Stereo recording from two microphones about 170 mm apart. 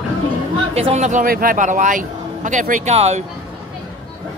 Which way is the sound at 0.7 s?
40° right (ahead or behind).